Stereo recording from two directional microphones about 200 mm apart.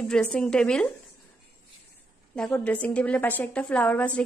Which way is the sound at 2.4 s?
5° left (ahead or behind).